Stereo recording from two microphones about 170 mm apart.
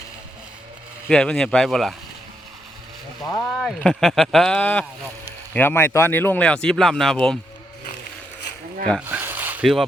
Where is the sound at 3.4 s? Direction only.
5° left (ahead or behind).